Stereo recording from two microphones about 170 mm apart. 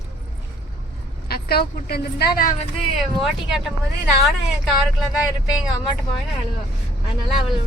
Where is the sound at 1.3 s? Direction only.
65° left (ahead or behind).